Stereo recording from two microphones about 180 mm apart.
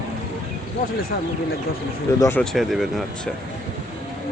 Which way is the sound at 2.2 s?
10° left (ahead or behind).